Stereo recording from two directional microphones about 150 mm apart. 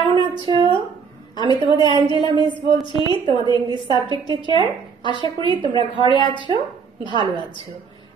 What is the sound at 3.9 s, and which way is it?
Speech, 30° right (ahead or behind).